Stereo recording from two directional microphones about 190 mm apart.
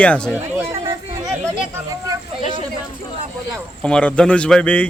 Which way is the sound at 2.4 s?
40° left (ahead or behind).